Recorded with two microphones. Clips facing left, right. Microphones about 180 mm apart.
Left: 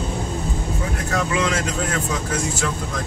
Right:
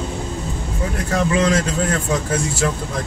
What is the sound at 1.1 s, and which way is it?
Speech, 35° right (ahead or behind).